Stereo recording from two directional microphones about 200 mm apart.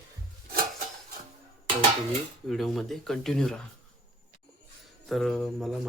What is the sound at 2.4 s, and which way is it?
Speech, centre (ahead or behind).